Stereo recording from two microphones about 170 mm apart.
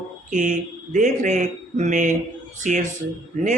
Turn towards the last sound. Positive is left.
turn(degrees=-45)  # may be behind; listen again after turning